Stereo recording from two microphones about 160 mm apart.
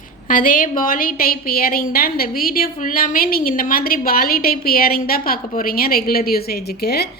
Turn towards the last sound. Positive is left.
turn(degrees=85)